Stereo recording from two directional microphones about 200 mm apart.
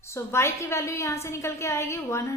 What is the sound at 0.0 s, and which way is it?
A woman's voice, 15° left (ahead or behind).